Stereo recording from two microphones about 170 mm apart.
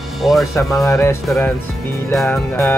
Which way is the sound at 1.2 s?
Centre (ahead or behind).